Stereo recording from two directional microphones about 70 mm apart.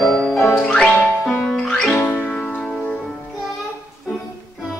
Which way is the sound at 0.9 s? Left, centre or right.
Centre.